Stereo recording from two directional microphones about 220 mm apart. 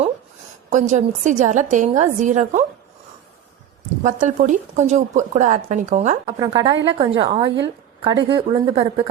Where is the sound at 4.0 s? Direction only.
35° right (ahead or behind).